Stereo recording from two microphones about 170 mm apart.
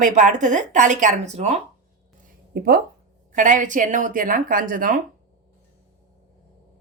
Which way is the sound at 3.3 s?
50° right (ahead or behind).